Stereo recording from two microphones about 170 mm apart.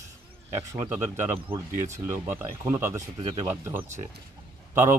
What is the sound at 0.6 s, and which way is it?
Speech, 15° right (ahead or behind).